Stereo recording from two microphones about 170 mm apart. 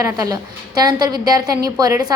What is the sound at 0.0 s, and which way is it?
A woman's voice, 20° right (ahead or behind).